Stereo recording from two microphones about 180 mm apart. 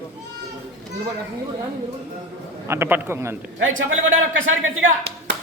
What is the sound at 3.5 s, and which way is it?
Speech, 90° right.